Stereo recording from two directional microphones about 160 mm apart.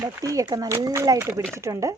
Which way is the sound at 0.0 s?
20° right (ahead or behind).